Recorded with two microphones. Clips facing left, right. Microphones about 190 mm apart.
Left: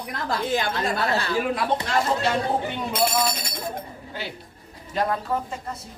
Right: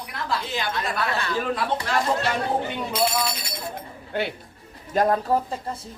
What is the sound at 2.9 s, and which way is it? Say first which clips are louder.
Speech: left 2 dB; 50° left (ahead or behind).